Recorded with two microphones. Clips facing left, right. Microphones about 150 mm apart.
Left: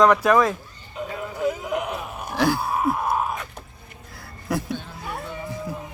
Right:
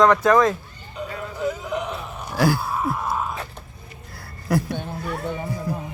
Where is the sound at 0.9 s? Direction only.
5° left (ahead or behind).